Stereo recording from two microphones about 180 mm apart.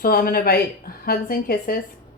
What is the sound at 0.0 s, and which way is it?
A woman's voice, 55° left (ahead or behind).